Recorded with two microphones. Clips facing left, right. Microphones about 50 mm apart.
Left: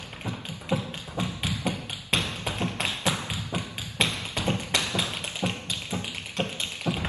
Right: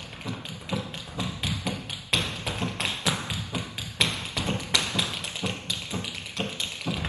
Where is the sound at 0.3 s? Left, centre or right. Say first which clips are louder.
Left 3 dB; left.